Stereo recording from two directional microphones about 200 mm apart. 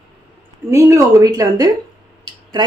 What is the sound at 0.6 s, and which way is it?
Speech, 15° right (ahead or behind).